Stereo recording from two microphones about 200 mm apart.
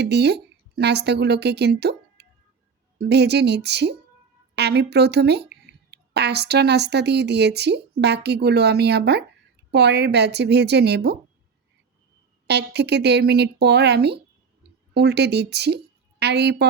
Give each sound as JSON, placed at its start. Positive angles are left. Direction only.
{"t": 0.0, "sound": "a woman's voice", "side_deg": -55}
{"t": 12.5, "sound": "a woman's voice", "side_deg": -55}